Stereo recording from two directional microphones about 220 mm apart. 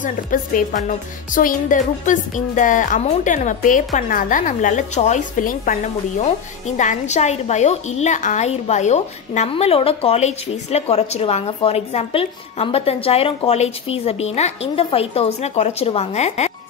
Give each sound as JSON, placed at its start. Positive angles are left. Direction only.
{"t": 0.0, "sound": "a woman's voice", "side_deg": 40}